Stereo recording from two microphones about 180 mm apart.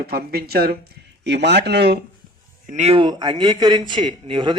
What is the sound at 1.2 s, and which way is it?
Speech, 70° right (ahead or behind).